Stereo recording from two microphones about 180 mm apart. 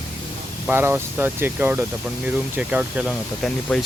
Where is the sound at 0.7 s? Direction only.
10° right (ahead or behind).